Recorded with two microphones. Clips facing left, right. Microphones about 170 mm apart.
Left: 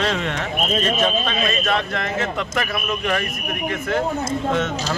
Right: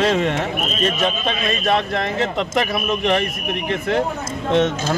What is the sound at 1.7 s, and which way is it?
Speech, 25° right (ahead or behind).